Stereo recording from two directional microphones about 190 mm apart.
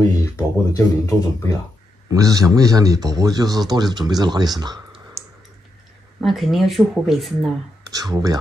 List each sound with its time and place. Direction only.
0.2 s speech: 15° left (ahead or behind)
2.0 s a man's voice: 20° right (ahead or behind)
6.2 s speech: centre (ahead or behind)
7.9 s a man's voice: 20° right (ahead or behind)